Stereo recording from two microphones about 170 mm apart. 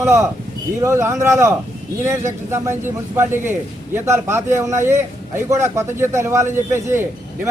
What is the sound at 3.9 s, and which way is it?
A man's voice, 15° right (ahead or behind).